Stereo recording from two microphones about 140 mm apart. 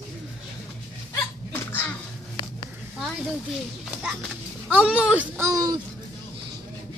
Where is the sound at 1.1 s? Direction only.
15° left (ahead or behind).